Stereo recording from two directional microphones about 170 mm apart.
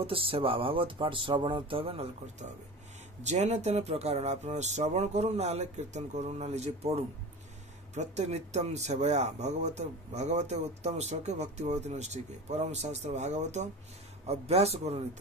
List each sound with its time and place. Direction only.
0.0 s speech: 30° right (ahead or behind)
3.3 s speech: 40° right (ahead or behind)